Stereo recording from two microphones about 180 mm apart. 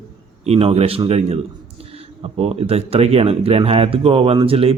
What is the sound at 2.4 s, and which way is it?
Speech, 35° right (ahead or behind).